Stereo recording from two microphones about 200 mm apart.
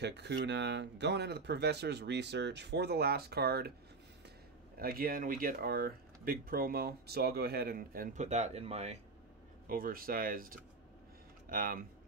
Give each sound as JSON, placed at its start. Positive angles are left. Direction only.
{"t": 0.0, "sound": "speech", "side_deg": -60}
{"t": 4.7, "sound": "speech", "side_deg": -45}
{"t": 9.7, "sound": "speech", "side_deg": -45}